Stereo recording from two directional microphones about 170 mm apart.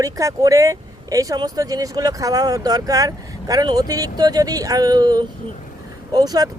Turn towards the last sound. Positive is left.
turn(degrees=-20)  # may be behind; listen again after turning